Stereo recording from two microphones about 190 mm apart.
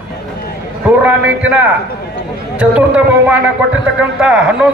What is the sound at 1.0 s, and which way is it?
A man's voice, 5° right (ahead or behind).